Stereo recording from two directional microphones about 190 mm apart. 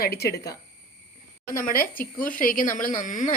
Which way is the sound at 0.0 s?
55° left (ahead or behind).